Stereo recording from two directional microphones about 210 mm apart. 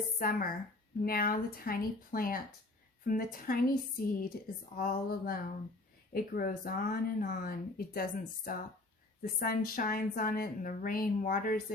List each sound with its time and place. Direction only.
0.2 s speech: 45° left (ahead or behind)